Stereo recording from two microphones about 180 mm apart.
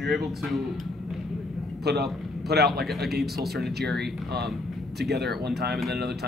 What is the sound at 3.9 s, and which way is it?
Speech, 65° right (ahead or behind).